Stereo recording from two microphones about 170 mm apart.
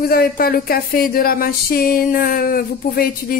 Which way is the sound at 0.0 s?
60° left (ahead or behind).